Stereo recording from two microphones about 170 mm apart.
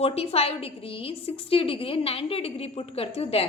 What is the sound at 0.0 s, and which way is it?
A woman's voice, 35° left (ahead or behind).